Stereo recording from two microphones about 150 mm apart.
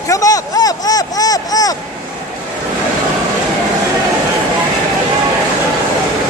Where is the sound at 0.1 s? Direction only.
25° left (ahead or behind).